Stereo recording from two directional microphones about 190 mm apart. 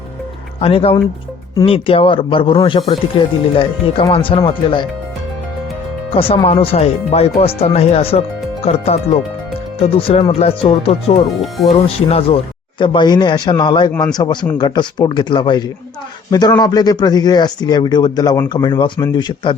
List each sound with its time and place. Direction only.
0.6 s speech: 30° left (ahead or behind)
6.1 s speech: 30° left (ahead or behind)
11.3 s speech: centre (ahead or behind)
11.9 s speech: 30° left (ahead or behind)